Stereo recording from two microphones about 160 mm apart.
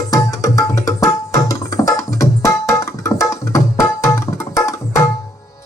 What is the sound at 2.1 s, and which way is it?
Tabla, 20° left (ahead or behind).